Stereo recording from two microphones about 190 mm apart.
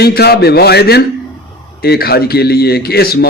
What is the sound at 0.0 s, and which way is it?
A man's voice, 55° left (ahead or behind).